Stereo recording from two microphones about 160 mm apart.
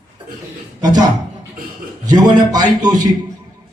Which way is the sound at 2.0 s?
25° right (ahead or behind).